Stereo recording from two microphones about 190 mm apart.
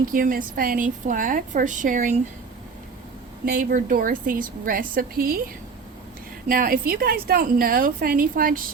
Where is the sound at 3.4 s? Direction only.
45° right (ahead or behind).